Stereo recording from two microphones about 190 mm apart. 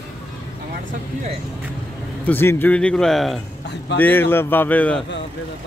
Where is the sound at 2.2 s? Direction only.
10° left (ahead or behind).